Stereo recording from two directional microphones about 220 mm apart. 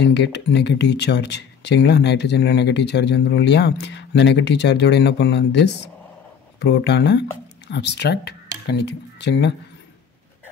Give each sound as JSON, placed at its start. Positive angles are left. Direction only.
{"t": 0.0, "sound": "speech", "side_deg": 50}